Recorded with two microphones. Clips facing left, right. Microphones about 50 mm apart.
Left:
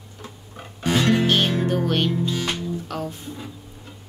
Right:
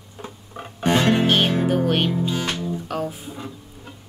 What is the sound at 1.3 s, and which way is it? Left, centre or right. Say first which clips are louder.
Music: right 2 dB; centre.